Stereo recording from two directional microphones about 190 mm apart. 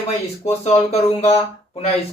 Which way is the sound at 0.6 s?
35° left (ahead or behind).